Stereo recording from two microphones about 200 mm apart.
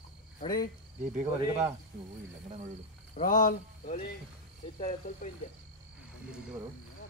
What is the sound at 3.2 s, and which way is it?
Speech, 45° left (ahead or behind).